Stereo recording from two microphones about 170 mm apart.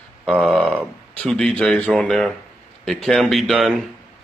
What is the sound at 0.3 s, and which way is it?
Speech, centre (ahead or behind).